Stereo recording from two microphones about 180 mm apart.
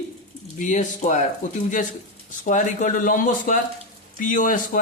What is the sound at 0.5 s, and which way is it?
Speech, 45° left (ahead or behind).